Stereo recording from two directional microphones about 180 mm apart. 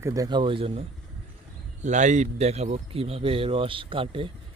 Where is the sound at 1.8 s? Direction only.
40° right (ahead or behind).